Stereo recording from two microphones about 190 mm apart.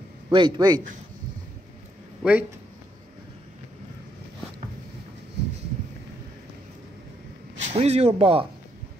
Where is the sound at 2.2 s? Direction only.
Centre (ahead or behind).